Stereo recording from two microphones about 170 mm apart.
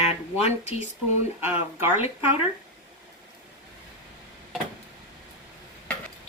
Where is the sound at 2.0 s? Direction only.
35° left (ahead or behind).